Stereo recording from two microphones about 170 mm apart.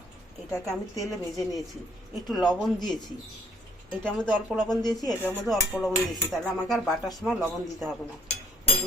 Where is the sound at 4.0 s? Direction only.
5° left (ahead or behind).